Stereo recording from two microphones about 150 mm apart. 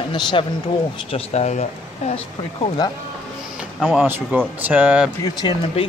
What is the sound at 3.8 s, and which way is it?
Speech, 5° left (ahead or behind).